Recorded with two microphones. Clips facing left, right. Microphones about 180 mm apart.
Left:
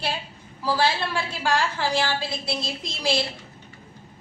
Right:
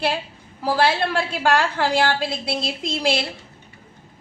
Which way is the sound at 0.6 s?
50° right (ahead or behind).